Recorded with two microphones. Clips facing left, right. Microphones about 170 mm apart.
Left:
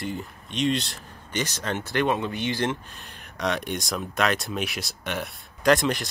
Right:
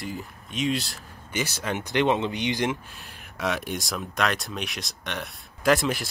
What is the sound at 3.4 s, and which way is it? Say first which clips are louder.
Speech: left 1 dB; 5° right (ahead or behind).